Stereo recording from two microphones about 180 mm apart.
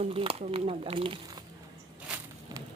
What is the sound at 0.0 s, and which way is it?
Speech, 30° right (ahead or behind).